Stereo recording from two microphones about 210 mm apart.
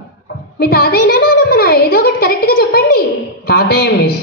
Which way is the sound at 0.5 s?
45° left (ahead or behind).